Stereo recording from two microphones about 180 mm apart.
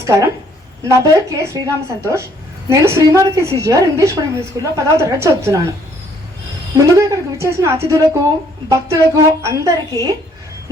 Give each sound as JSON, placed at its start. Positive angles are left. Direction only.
{"t": 0.0, "sound": "a woman's voice", "side_deg": -15}
{"t": 6.7, "sound": "a woman's voice", "side_deg": -20}